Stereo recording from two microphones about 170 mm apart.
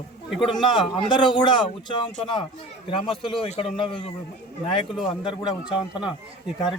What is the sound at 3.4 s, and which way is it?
Speech, 40° left (ahead or behind).